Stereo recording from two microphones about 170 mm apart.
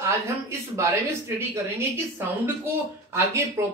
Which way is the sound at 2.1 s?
15° right (ahead or behind).